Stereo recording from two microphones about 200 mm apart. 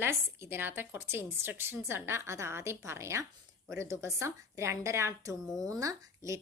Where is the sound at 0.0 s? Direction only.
10° right (ahead or behind).